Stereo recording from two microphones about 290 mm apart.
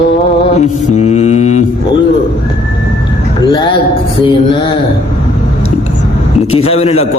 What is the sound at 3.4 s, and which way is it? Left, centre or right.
Music, centre.